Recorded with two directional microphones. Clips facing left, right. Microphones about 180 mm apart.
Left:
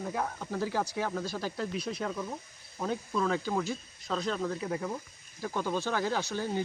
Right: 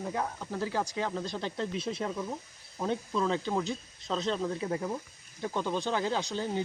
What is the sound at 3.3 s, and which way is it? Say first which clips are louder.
Speech: even; 25° right (ahead or behind).